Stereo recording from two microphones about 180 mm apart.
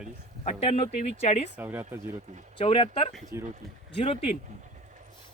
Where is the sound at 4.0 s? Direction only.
30° left (ahead or behind).